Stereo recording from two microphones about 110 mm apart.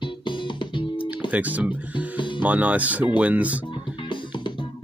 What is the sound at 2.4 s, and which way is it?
Speech, 15° right (ahead or behind).